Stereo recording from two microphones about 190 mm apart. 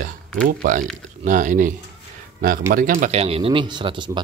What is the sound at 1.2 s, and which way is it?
Speech, 40° right (ahead or behind).